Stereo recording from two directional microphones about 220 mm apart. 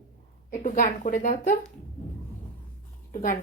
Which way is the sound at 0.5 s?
35° left (ahead or behind).